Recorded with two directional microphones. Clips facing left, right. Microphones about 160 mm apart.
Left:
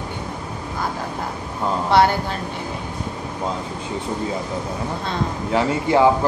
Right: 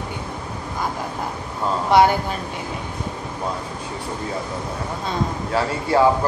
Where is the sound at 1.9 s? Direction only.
10° right (ahead or behind).